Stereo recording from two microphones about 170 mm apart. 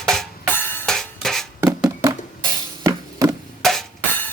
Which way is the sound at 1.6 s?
15° right (ahead or behind).